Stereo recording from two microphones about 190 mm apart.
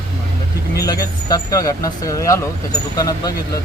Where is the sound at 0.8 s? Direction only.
20° left (ahead or behind).